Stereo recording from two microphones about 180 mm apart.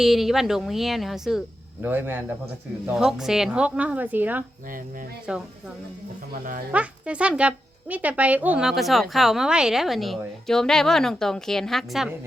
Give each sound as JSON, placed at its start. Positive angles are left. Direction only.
{"t": 0.0, "sound": "speech", "side_deg": 0}
{"t": 6.3, "sound": "speech", "side_deg": -50}
{"t": 6.7, "sound": "speech", "side_deg": -5}